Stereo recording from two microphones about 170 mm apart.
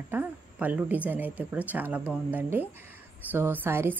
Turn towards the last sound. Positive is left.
turn(degrees=-15)  # may be behind; listen again after turning